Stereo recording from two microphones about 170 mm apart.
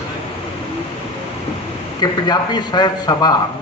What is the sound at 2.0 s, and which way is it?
A man's voice, 25° left (ahead or behind).